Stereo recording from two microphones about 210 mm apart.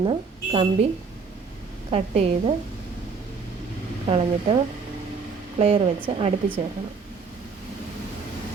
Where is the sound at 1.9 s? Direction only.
30° right (ahead or behind).